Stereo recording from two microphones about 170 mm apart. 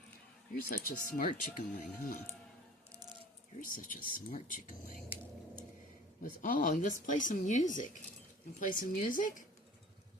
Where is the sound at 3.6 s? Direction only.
55° left (ahead or behind).